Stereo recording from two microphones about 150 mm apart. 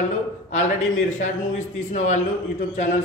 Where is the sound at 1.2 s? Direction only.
55° left (ahead or behind).